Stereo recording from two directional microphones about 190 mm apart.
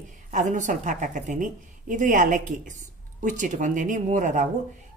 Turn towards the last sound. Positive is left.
turn(degrees=-40)  # may be behind; listen again after turning